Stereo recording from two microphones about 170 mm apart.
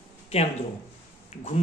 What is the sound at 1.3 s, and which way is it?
Speech, 40° left (ahead or behind).